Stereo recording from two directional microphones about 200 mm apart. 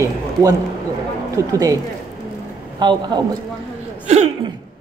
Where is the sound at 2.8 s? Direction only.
20° right (ahead or behind).